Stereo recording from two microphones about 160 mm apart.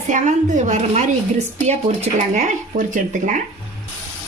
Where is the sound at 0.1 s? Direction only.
50° right (ahead or behind).